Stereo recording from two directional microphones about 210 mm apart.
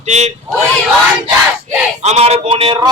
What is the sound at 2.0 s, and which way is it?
Speech, 30° right (ahead or behind).